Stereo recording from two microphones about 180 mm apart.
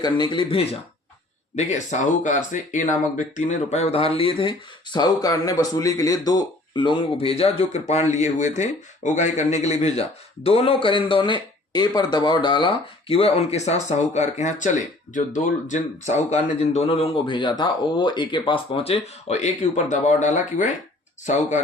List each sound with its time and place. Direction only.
0.0 s speech: 25° left (ahead or behind); by 20.7 s 40° left (ahead or behind)